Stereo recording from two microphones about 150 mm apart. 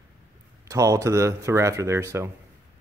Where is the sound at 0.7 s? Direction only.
20° right (ahead or behind).